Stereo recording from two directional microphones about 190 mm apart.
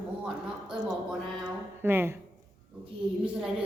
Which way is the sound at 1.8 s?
10° right (ahead or behind).